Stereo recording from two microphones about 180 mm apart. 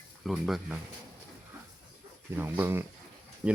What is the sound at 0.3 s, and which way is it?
Speech, centre (ahead or behind).